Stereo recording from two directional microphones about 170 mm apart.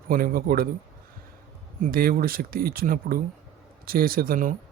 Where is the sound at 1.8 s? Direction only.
60° right (ahead or behind).